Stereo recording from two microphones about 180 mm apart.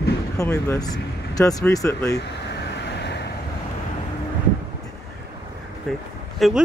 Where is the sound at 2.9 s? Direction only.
70° left (ahead or behind).